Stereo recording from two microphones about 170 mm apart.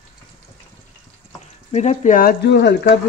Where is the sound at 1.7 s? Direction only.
40° left (ahead or behind); by 2.7 s 75° left (ahead or behind).